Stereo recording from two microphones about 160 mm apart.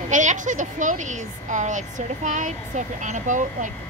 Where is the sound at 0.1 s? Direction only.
50° right (ahead or behind).